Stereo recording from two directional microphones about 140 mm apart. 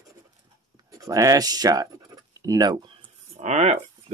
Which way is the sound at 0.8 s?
25° right (ahead or behind).